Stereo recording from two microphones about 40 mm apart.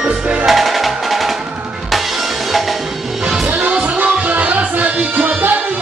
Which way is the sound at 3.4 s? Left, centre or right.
Right.